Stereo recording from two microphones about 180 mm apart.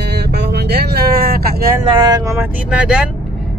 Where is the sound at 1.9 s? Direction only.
20° right (ahead or behind).